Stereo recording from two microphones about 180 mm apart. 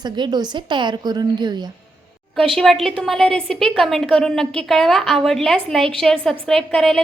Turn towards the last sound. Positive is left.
turn(degrees=0)  # may be behind; listen again after turning